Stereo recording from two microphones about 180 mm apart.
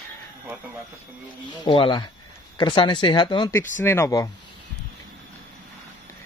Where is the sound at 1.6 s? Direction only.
25° left (ahead or behind).